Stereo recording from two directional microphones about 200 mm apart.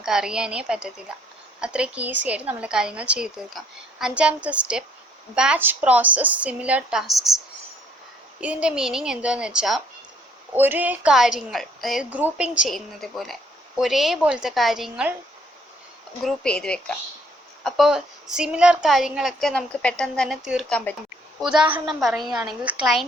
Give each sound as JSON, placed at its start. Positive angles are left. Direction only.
{"t": 0.0, "sound": "a woman's voice", "side_deg": -5}
{"t": 8.4, "sound": "a woman's voice", "side_deg": -5}
{"t": 16.2, "sound": "a woman's voice", "side_deg": 5}